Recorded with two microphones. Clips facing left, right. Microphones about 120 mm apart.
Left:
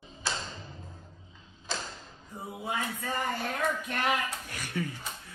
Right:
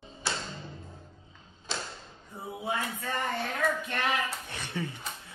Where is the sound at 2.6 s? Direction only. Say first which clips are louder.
Right 1 dB; centre (ahead or behind).